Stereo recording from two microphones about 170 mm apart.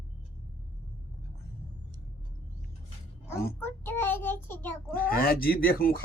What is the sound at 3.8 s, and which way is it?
Child singing, 10° left (ahead or behind).